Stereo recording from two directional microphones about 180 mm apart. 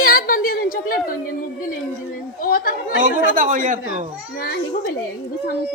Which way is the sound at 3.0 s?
45° right (ahead or behind).